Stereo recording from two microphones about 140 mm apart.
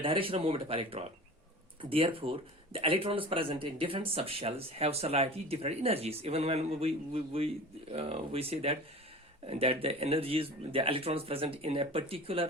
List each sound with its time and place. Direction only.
0.0 s speech: 40° right (ahead or behind)